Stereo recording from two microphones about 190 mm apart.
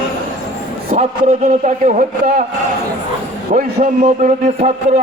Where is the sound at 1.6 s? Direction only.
45° right (ahead or behind).